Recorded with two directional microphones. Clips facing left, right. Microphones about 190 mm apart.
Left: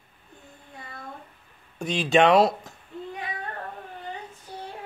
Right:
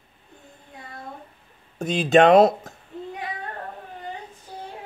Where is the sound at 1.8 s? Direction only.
45° right (ahead or behind).